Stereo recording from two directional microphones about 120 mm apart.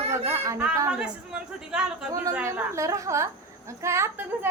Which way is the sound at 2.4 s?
25° right (ahead or behind).